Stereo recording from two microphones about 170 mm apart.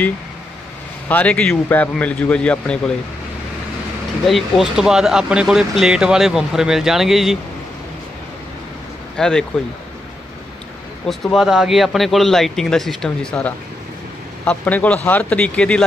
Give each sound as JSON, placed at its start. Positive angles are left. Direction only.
{"t": 1.0, "sound": "a man's voice", "side_deg": 10}
{"t": 4.3, "sound": "speech", "side_deg": 0}
{"t": 9.1, "sound": "speech", "side_deg": 5}
{"t": 11.3, "sound": "a man's voice", "side_deg": 0}